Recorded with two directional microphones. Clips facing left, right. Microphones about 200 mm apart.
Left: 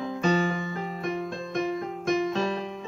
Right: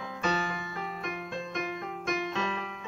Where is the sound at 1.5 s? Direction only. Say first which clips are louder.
Left 11 dB; 35° left (ahead or behind).